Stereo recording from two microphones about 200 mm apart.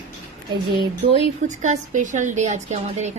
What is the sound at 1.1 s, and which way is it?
A woman's voice, 35° right (ahead or behind).